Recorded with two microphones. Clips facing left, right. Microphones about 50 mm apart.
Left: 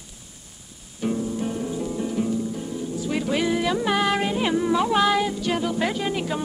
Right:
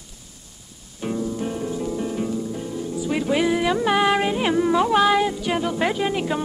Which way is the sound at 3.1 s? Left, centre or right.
Centre.